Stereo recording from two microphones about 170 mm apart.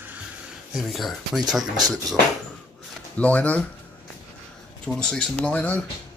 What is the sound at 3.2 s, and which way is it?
Speech, 10° left (ahead or behind).